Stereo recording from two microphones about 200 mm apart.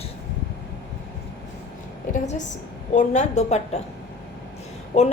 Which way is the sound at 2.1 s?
40° left (ahead or behind).